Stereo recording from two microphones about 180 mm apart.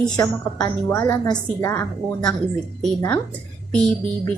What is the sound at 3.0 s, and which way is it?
Speech, 15° left (ahead or behind).